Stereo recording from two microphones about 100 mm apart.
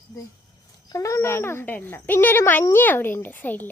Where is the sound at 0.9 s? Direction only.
30° left (ahead or behind).